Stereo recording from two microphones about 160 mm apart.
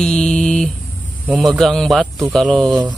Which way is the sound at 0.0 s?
5° left (ahead or behind).